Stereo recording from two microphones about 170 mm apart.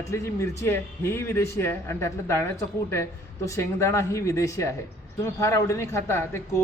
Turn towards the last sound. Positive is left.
turn(degrees=15)  # may be behind; listen again after turning